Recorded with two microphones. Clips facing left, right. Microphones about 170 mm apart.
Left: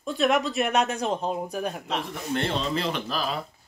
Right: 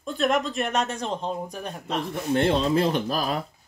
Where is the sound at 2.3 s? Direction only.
50° right (ahead or behind).